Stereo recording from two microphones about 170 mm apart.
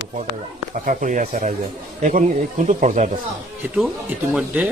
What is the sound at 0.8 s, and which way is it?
Speech, 50° right (ahead or behind).